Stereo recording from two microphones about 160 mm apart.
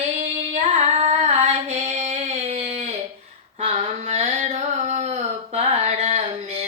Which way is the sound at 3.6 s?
45° right (ahead or behind).